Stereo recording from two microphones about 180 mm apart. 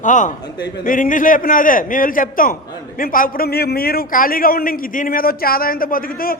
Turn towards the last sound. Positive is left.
turn(degrees=55)  # may be behind; listen again after turning